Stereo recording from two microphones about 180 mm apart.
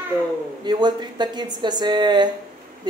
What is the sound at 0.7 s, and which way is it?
A woman's voice, 25° right (ahead or behind).